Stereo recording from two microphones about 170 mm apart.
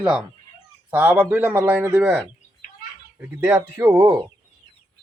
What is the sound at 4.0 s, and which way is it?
Speech, 25° right (ahead or behind).